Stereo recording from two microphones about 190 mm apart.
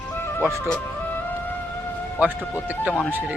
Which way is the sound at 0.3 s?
5° left (ahead or behind).